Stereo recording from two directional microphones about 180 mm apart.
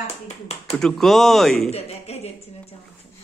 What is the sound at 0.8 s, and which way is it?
Speech, centre (ahead or behind).